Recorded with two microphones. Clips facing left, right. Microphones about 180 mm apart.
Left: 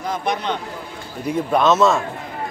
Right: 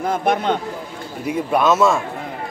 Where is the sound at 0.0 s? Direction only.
55° right (ahead or behind).